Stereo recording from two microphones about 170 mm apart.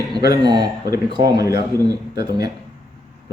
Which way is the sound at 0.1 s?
25° right (ahead or behind).